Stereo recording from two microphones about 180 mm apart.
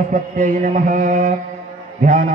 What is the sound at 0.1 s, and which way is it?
Mantra, 50° right (ahead or behind).